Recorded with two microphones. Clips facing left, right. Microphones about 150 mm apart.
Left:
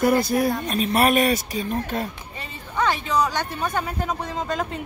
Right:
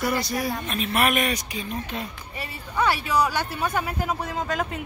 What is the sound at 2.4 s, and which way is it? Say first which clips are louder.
A woman's voice: even; 10° right (ahead or behind).